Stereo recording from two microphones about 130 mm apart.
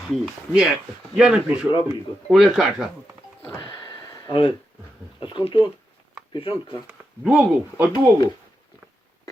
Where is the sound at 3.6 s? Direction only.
35° left (ahead or behind).